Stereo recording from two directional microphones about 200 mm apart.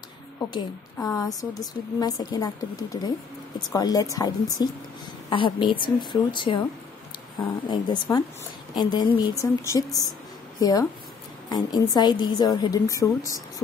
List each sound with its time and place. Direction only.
0.9 s a woman's voice: 15° left (ahead or behind)